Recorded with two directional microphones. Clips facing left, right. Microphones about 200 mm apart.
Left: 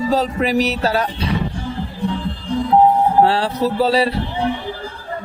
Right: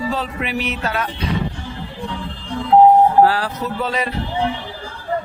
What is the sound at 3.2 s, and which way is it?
Speech, 30° left (ahead or behind).